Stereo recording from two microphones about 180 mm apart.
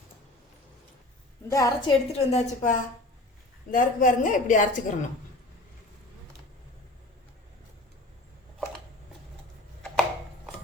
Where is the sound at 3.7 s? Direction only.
45° left (ahead or behind).